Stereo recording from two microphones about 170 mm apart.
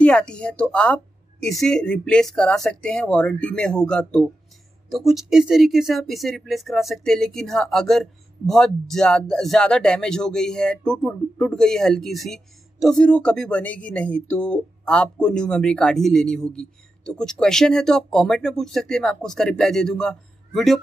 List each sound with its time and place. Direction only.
0.0 s speech: 5° left (ahead or behind)